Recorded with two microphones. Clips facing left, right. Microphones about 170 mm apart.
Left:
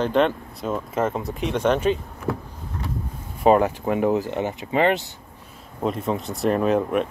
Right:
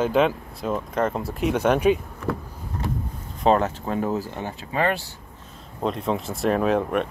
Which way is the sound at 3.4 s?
10° left (ahead or behind).